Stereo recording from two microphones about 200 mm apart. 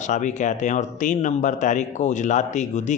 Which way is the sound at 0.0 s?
35° left (ahead or behind).